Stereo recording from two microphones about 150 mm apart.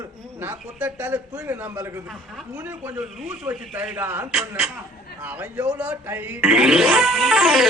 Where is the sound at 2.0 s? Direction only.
Centre (ahead or behind).